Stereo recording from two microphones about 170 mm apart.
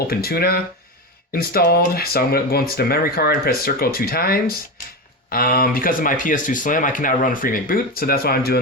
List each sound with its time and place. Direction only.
0.1 s speech: 65° left (ahead or behind)